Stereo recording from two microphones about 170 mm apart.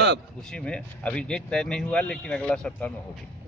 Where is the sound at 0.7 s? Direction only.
5° left (ahead or behind).